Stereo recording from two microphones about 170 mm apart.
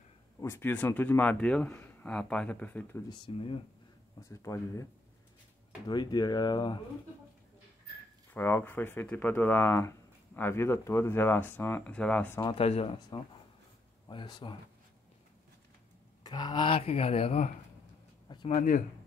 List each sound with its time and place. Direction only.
0.4 s speech: 15° left (ahead or behind)
3.1 s speech: 30° left (ahead or behind)
4.3 s speech: 20° left (ahead or behind)
5.9 s speech: 25° left (ahead or behind)
8.3 s speech: 10° left (ahead or behind)
12.4 s speech: 35° left (ahead or behind)
16.3 s speech: 25° left (ahead or behind)
18.3 s a sound: 30° left (ahead or behind)
18.6 s speech: 50° left (ahead or behind)